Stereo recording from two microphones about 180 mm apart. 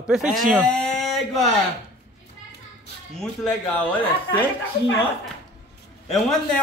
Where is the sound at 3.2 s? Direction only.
Centre (ahead or behind).